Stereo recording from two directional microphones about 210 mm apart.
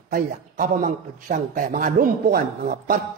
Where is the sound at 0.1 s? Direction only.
40° right (ahead or behind).